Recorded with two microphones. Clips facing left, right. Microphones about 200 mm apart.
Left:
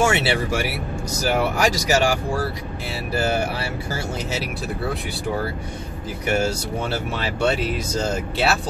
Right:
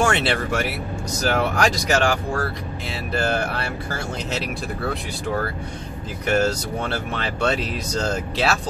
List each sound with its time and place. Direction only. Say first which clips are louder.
0.0 s speech: left 1 dB; 5° left (ahead or behind)